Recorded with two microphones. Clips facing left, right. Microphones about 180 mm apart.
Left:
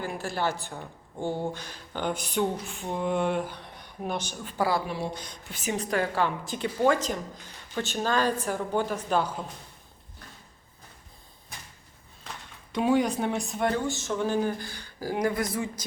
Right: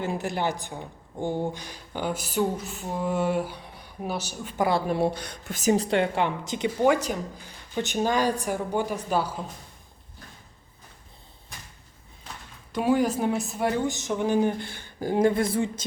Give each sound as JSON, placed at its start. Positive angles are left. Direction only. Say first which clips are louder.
{"t": 0.0, "sound": "speech", "louder": "right 2 dB", "side_deg": -20}
{"t": 4.5, "sound": "speech", "louder": "right 2 dB", "side_deg": -20}
{"t": 4.9, "sound": "speech", "louder": "right 8 dB", "side_deg": -60}
{"t": 5.5, "sound": "speech", "louder": "right 7 dB", "side_deg": -40}
{"t": 12.7, "sound": "a woman's voice", "louder": "right 1 dB", "side_deg": -5}
{"t": 13.8, "sound": "speech", "louder": "right 2 dB", "side_deg": -15}